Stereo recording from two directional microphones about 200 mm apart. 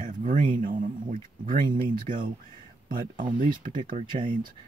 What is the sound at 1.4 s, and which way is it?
Speech, 45° right (ahead or behind).